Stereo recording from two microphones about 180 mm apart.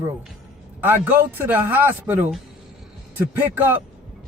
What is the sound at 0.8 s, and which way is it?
A man's voice, 10° right (ahead or behind).